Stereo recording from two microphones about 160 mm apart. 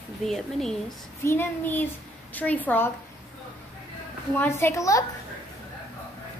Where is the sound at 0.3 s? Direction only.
Centre (ahead or behind).